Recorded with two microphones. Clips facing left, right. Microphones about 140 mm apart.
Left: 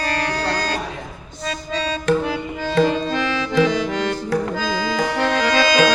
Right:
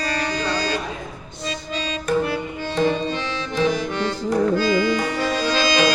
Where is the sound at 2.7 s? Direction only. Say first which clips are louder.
Left 3 dB; 90° left.